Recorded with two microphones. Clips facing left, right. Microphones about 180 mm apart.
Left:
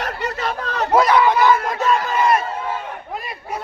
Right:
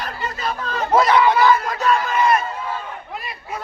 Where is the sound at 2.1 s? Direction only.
35° left (ahead or behind).